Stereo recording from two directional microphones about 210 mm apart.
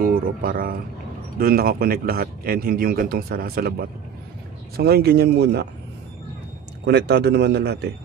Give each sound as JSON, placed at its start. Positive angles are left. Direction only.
{"t": 0.0, "sound": "a sound", "side_deg": -45}
{"t": 1.4, "sound": "a man's voice", "side_deg": -45}
{"t": 4.7, "sound": "a man's voice", "side_deg": -50}
{"t": 6.9, "sound": "a man's voice", "side_deg": -50}